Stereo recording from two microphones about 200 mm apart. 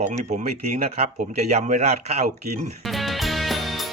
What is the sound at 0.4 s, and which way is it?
Speech, 35° right (ahead or behind).